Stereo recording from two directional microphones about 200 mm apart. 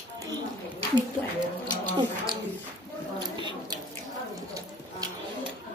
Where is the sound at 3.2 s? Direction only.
20° right (ahead or behind).